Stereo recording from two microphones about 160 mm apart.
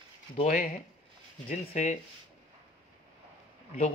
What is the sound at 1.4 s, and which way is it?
Speech, 45° left (ahead or behind).